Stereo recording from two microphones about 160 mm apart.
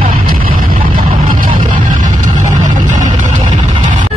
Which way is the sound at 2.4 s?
50° right (ahead or behind).